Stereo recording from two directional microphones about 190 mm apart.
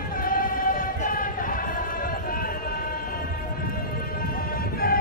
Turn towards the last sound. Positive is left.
turn(degrees=50)  # may be behind; listen again after turning